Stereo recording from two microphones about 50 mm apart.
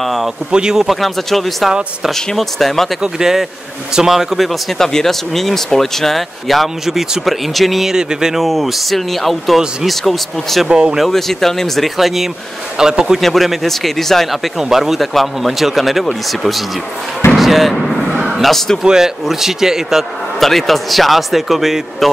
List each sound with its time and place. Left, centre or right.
0.0 s speech: centre
0.5 s a man's voice: centre
0.8 s speech: centre
3.0 s a man's voice: centre
7.9 s a man's voice: centre
10.7 s a man's voice: centre
11.1 s speech: centre
12.7 s a man's voice: centre
13.2 s speech: centre
17.4 s slam: centre
18.2 s a sound: centre
18.8 s a man's voice: centre
20.3 s speech: centre